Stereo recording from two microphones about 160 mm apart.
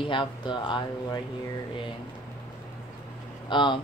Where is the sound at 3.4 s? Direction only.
30° left (ahead or behind).